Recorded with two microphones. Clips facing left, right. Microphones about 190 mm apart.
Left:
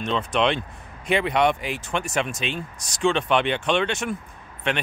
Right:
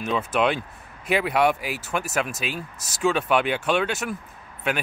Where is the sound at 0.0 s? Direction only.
5° right (ahead or behind).